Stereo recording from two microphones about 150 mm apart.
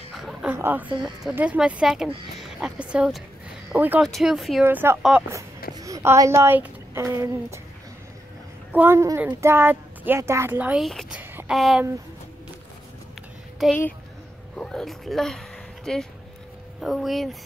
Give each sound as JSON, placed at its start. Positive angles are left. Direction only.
{"t": 0.1, "sound": "a sound", "side_deg": 0}
{"t": 0.5, "sound": "a woman's voice", "side_deg": -15}
{"t": 4.6, "sound": "a woman's voice", "side_deg": -15}
{"t": 8.7, "sound": "a woman's voice", "side_deg": -15}
{"t": 11.1, "sound": "a sound", "side_deg": -10}
{"t": 11.5, "sound": "speech", "side_deg": 0}
{"t": 13.6, "sound": "speech", "side_deg": 0}